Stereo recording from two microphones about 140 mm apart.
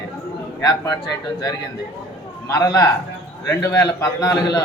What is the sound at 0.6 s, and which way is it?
Speech, 25° left (ahead or behind).